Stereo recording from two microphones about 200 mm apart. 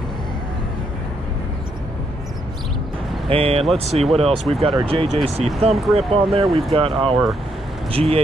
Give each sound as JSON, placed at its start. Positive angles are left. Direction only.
{"t": 3.3, "sound": "speech", "side_deg": -30}
{"t": 5.7, "sound": "speech", "side_deg": 0}
{"t": 5.9, "sound": "speech", "side_deg": -30}